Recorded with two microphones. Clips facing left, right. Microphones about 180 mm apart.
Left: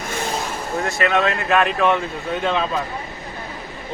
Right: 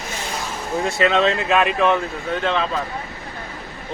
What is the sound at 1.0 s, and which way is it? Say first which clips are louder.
Speech: right 2 dB; 20° right (ahead or behind).